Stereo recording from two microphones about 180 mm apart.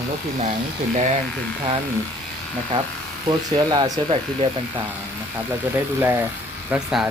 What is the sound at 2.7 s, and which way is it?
Speech, 25° right (ahead or behind).